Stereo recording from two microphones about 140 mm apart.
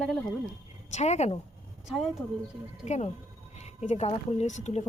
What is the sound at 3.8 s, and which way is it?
Speech, 50° left (ahead or behind).